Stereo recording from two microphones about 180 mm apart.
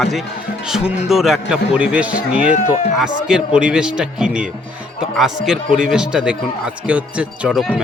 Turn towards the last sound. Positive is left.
turn(degrees=-5)  # may be behind; listen again after turning